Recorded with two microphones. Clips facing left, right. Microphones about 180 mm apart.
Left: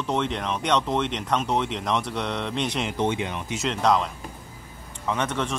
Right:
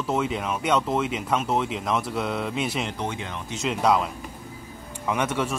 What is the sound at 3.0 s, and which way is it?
Speech, 20° left (ahead or behind).